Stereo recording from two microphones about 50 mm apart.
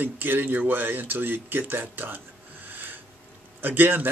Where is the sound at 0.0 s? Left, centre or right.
Right.